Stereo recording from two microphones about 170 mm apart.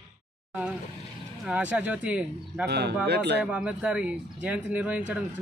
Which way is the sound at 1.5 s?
10° right (ahead or behind).